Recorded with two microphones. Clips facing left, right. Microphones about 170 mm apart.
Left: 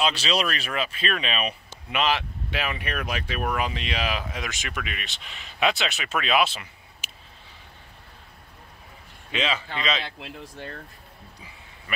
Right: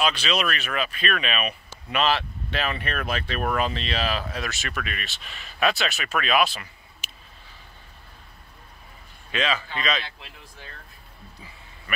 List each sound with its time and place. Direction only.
0.0 s speech: 30° left (ahead or behind)
7.0 s a sound: 10° left (ahead or behind)
9.3 s speech: 20° left (ahead or behind)
10.1 s speech: 60° left (ahead or behind)